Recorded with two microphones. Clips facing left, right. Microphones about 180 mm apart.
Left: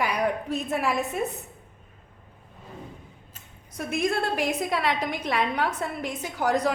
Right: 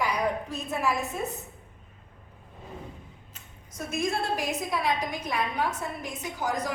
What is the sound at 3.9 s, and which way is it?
A woman's voice, 60° left (ahead or behind).